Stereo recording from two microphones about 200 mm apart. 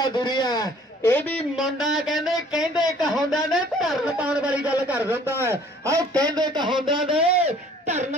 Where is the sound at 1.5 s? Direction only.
Centre (ahead or behind).